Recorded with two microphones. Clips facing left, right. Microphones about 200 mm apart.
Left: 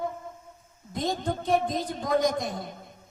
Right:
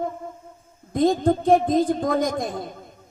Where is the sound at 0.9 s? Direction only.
50° right (ahead or behind).